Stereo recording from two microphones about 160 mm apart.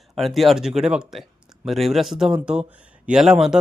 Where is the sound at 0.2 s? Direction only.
Centre (ahead or behind).